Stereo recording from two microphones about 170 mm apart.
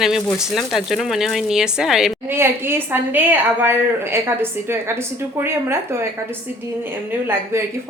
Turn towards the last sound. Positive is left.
turn(degrees=-15)  # may be behind; listen again after turning